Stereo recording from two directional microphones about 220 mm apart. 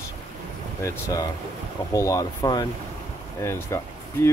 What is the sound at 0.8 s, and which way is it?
Speech, 15° left (ahead or behind).